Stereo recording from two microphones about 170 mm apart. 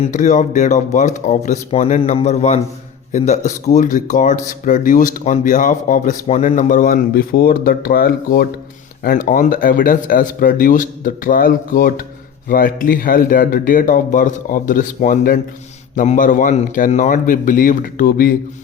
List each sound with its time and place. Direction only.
0.0 s a man's voice: 45° left (ahead or behind)
6.2 s speech: 40° left (ahead or behind); by 18.3 s 60° left (ahead or behind)